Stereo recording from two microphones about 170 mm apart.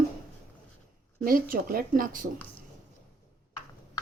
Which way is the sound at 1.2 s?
55° right (ahead or behind).